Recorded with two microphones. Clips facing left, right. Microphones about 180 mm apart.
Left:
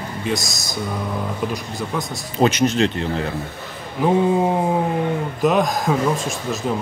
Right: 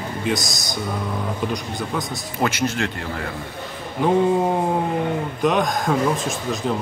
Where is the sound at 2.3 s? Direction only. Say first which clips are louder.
Left 6 dB; 20° left (ahead or behind).